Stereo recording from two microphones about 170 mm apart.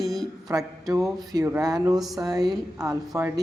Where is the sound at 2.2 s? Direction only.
20° right (ahead or behind).